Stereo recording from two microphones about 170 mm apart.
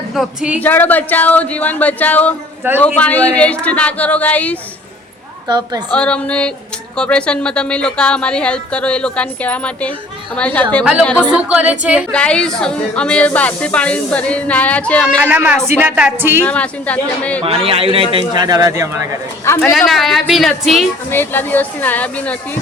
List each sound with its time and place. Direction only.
0.1 s a woman's voice: 5° right (ahead or behind)
0.6 s a woman's voice: 10° left (ahead or behind)
5.5 s speech: 25° right (ahead or behind)
5.9 s a woman's voice: 5° left (ahead or behind)
11.2 s a woman's voice: 5° right (ahead or behind)
12.1 s a woman's voice: 5° left (ahead or behind)
15.2 s a woman's voice: 10° right (ahead or behind)
16.4 s a woman's voice: 10° left (ahead or behind)
17.4 s speech: 35° right (ahead or behind)
18.3 s speech: 20° right (ahead or behind)
19.5 s a woman's voice: 15° left (ahead or behind)
19.7 s a woman's voice: centre (ahead or behind)
21.1 s a woman's voice: 10° left (ahead or behind)